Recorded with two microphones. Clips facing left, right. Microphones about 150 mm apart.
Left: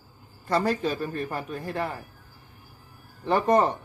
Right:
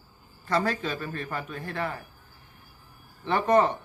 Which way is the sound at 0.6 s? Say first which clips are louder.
Left 3 dB; 10° left (ahead or behind).